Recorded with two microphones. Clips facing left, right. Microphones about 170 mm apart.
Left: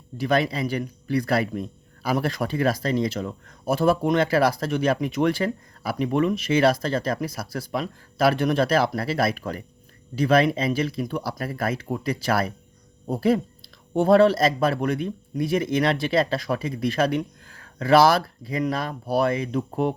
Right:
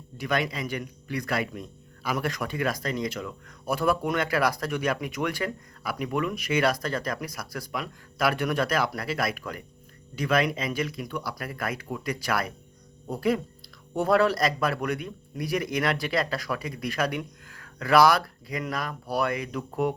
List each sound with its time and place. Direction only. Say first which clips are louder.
0.2 s speech: left 6 dB; 30° left (ahead or behind)